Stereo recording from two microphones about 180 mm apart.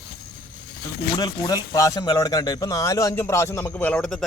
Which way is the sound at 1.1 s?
20° left (ahead or behind).